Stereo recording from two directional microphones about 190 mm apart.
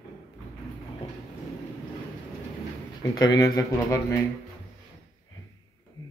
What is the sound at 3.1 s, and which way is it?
A man's voice, 20° left (ahead or behind).